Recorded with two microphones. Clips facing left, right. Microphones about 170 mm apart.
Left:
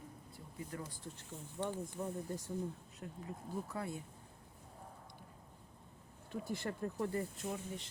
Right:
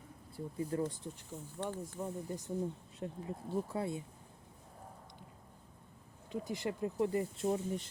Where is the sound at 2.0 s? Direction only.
5° right (ahead or behind).